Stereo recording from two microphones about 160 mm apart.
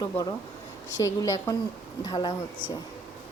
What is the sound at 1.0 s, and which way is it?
A woman's voice, 20° left (ahead or behind).